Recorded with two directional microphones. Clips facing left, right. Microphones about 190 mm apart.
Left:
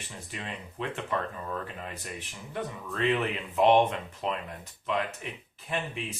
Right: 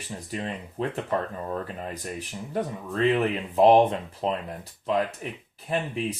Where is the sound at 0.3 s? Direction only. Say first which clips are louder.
Right 7 dB; 40° right (ahead or behind).